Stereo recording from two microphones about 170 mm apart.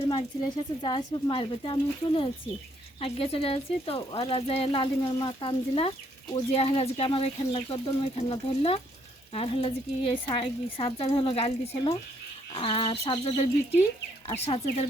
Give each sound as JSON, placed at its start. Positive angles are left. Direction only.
{"t": 0.1, "sound": "speech", "side_deg": 25}